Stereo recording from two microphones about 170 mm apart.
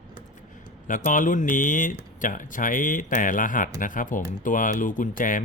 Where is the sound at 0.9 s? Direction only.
50° left (ahead or behind).